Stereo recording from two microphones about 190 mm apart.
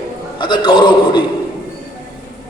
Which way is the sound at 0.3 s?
25° left (ahead or behind).